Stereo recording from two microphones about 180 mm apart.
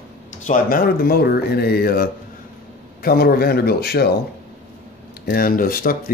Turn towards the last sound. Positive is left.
turn(degrees=50)  # may be behind; listen again after turning